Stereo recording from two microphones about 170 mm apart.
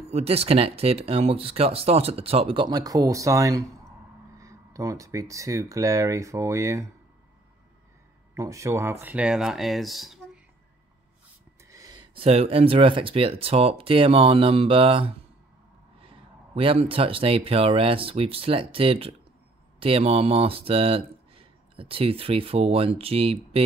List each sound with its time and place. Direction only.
0.1 s speech: 35° right (ahead or behind); by 6.9 s 15° right (ahead or behind)
8.4 s speech: 15° right (ahead or behind); by 10.4 s centre (ahead or behind)
11.7 s speech: 25° right (ahead or behind)